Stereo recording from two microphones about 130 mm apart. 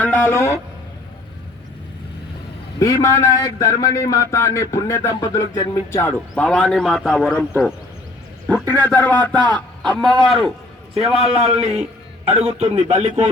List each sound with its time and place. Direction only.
0.0 s a man's voice: 15° left (ahead or behind)
2.7 s a man's voice: 25° left (ahead or behind)
6.3 s a man's voice: 10° left (ahead or behind)
11.3 s a man's voice: 50° right (ahead or behind)